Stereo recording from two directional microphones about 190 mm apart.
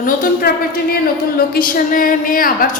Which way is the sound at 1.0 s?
50° left (ahead or behind).